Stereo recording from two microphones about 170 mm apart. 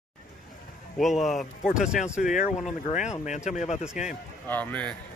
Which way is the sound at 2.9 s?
45° left (ahead or behind).